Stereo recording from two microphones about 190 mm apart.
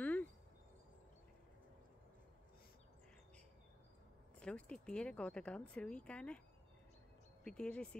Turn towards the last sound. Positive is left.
turn(degrees=5)  # may be behind; listen again after turning